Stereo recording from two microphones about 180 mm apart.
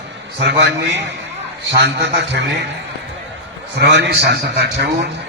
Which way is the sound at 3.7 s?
70° right (ahead or behind).